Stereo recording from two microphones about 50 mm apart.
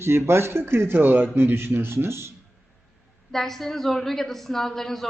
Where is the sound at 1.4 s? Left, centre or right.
Right.